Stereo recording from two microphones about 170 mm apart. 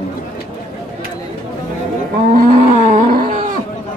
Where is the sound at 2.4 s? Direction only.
50° right (ahead or behind).